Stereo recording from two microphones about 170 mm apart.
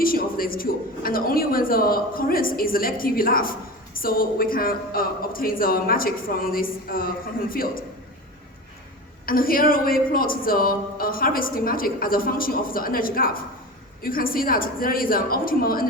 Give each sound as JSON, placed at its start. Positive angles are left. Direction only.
{"t": 0.0, "sound": "speech", "side_deg": 60}
{"t": 9.2, "sound": "speech", "side_deg": 60}